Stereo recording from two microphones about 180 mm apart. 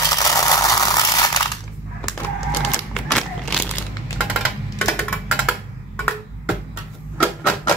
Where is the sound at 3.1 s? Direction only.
5° left (ahead or behind).